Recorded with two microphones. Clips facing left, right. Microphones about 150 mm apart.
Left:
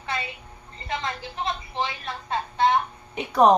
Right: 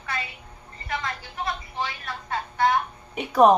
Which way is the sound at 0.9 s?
25° left (ahead or behind).